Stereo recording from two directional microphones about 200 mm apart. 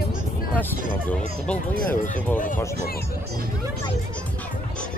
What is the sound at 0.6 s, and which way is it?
Speech, 5° left (ahead or behind).